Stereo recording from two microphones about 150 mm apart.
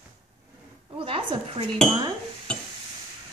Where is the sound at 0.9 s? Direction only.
35° right (ahead or behind).